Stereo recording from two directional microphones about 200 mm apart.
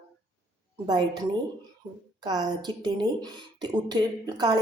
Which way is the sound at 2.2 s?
20° right (ahead or behind).